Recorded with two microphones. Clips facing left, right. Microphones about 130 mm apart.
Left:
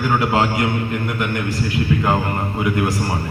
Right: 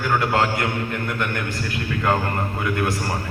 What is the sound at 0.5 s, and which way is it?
A man's voice, 20° left (ahead or behind).